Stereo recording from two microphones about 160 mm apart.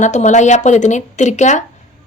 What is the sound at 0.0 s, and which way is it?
Speech, 45° left (ahead or behind).